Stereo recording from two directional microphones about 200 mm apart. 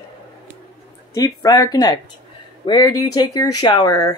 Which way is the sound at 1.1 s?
20° left (ahead or behind).